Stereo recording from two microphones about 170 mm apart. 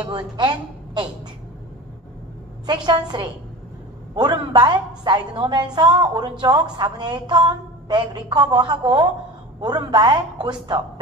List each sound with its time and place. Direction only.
0.0 s a woman's voice: 25° right (ahead or behind)
2.6 s a woman's voice: 25° right (ahead or behind)